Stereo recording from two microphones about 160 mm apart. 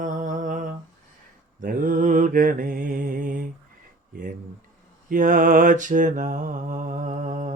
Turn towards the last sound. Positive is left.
turn(degrees=-50)  # may be behind; listen again after turning